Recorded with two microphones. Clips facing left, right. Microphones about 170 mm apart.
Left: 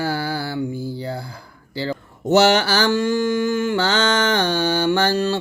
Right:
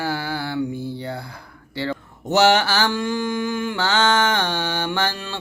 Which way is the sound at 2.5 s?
40° left (ahead or behind).